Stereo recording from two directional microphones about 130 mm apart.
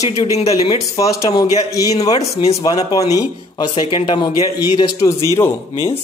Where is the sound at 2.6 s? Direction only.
30° left (ahead or behind).